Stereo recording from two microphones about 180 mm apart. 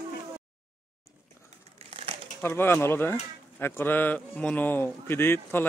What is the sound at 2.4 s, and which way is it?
Speech, 10° left (ahead or behind).